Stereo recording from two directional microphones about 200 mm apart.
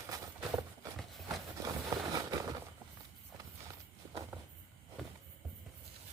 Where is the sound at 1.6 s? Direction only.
20° right (ahead or behind).